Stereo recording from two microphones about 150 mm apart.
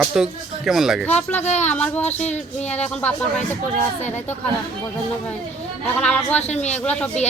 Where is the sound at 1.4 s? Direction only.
50° left (ahead or behind).